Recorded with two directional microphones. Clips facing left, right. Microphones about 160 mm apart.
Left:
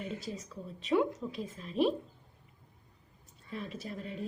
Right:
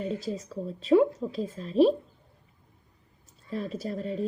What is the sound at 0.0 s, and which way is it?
Speech, 35° right (ahead or behind).